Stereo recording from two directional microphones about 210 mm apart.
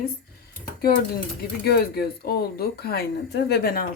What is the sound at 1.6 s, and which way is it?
Speech, 50° left (ahead or behind).